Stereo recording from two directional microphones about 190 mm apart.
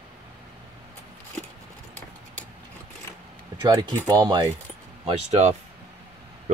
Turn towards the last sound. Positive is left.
turn(degrees=-35)  # may be behind; listen again after turning